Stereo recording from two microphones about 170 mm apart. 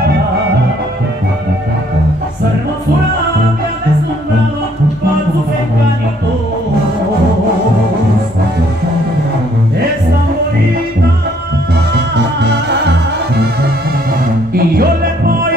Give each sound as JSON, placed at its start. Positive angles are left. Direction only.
{"t": 11.9, "sound": "music", "side_deg": -80}
{"t": 14.5, "sound": "music", "side_deg": -60}